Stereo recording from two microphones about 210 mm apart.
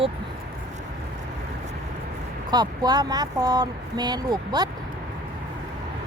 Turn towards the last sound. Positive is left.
turn(degrees=-20)  # may be behind; listen again after turning